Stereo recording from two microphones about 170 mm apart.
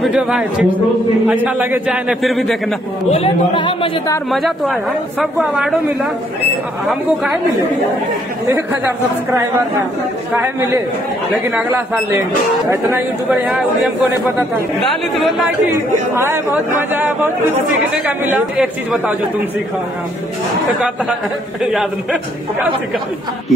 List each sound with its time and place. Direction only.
0.0 s a man's voice: 5° right (ahead or behind)
3.1 s speech: 35° left (ahead or behind)
4.3 s speech: centre (ahead or behind)
10.3 s a man's voice: 10° right (ahead or behind)
13.3 s speech: centre (ahead or behind)
16.5 s a man's voice: 10° right (ahead or behind)
21.7 s speech: 5° right (ahead or behind)